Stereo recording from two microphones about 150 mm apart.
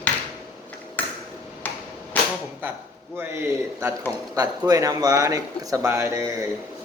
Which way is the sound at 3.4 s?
20° right (ahead or behind).